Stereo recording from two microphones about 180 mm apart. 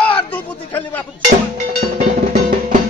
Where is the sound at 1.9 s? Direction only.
50° right (ahead or behind).